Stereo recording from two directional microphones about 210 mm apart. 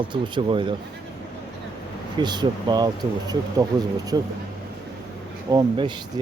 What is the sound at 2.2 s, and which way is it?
Speech, 20° right (ahead or behind).